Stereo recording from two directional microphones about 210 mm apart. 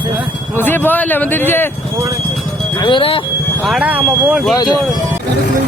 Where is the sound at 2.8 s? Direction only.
25° left (ahead or behind).